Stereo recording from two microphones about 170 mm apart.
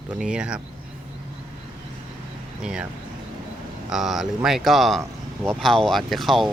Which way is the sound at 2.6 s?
5° right (ahead or behind).